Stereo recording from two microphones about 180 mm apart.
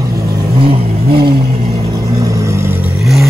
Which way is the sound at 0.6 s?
30° right (ahead or behind).